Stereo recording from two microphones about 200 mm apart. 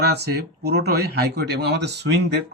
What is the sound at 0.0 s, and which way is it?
Speech, 55° right (ahead or behind).